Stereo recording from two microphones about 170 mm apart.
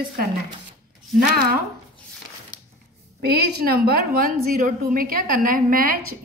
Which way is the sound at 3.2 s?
70° right (ahead or behind).